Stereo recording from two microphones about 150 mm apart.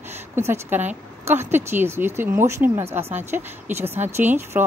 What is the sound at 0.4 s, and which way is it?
A woman's voice, 15° right (ahead or behind).